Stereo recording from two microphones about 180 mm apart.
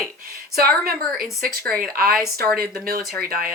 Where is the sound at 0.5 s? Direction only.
55° right (ahead or behind).